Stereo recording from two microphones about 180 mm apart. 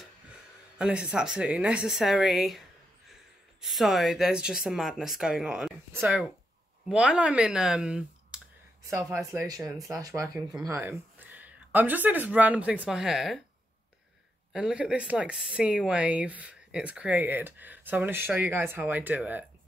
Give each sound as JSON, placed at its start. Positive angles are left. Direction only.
{"t": 0.7, "sound": "speech", "side_deg": -5}
{"t": 3.6, "sound": "speech", "side_deg": 0}
{"t": 14.5, "sound": "speech", "side_deg": -5}